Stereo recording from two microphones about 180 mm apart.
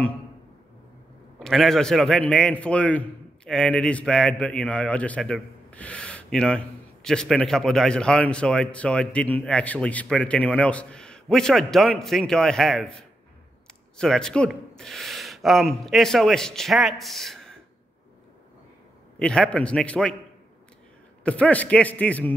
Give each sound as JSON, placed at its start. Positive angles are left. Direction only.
{"t": 1.4, "sound": "a man's voice", "side_deg": 0}
{"t": 13.9, "sound": "a man's voice", "side_deg": 5}
{"t": 19.1, "sound": "a man's voice", "side_deg": 5}
{"t": 21.2, "sound": "a man's voice", "side_deg": 5}